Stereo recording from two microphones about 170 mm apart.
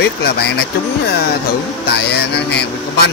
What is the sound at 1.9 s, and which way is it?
Speech, 80° left.